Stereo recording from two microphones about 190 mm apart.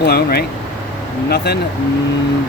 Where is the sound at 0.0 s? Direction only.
55° left (ahead or behind).